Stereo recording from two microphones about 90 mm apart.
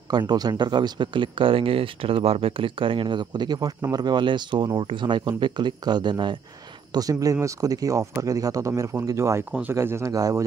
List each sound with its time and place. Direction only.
0.1 s speech: 50° right (ahead or behind)
6.9 s speech: 40° right (ahead or behind)